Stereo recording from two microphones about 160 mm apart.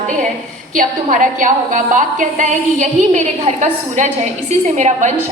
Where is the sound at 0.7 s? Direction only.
55° right (ahead or behind).